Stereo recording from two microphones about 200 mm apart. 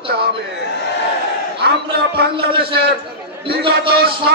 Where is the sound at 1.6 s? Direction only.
55° right (ahead or behind).